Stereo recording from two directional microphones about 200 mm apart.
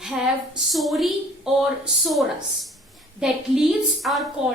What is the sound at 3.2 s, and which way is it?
A woman's voice, centre (ahead or behind).